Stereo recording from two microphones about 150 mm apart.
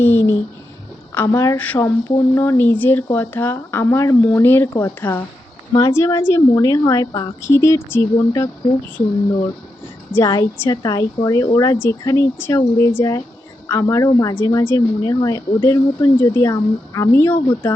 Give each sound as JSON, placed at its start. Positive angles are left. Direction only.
{"t": 0.0, "sound": "a woman's voice", "side_deg": 15}
{"t": 10.2, "sound": "a woman's voice", "side_deg": 20}